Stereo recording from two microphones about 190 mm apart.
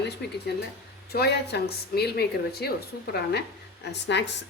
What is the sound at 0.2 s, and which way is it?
A woman's voice, 60° left (ahead or behind).